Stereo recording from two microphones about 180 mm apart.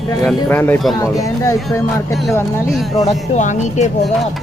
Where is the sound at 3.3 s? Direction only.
40° left (ahead or behind).